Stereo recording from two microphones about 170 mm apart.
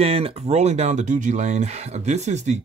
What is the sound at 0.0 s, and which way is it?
Speech, 35° right (ahead or behind).